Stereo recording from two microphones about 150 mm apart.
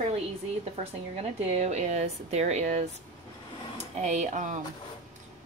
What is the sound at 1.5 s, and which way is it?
Speech, 45° right (ahead or behind).